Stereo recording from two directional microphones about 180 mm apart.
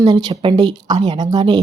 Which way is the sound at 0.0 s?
20° right (ahead or behind).